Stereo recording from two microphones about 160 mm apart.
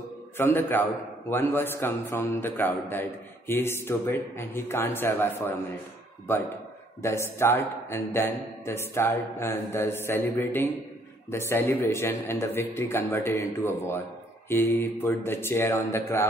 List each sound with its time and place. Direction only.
0.4 s a man's voice: 15° left (ahead or behind)
7.0 s a man's voice: 15° left (ahead or behind)